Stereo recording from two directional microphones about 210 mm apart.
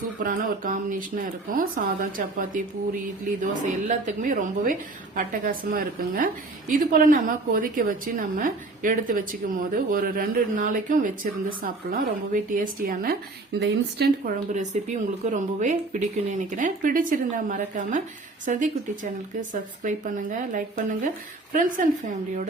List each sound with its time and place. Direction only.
0.2 s a woman's voice: 40° right (ahead or behind)
15.3 s a woman's voice: 35° right (ahead or behind)